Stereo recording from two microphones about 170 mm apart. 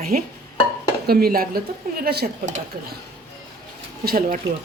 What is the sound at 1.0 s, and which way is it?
Speech, 65° right (ahead or behind).